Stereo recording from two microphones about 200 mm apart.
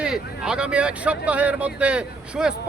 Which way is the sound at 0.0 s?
5° right (ahead or behind).